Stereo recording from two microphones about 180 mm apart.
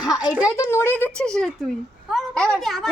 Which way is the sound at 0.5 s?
15° left (ahead or behind).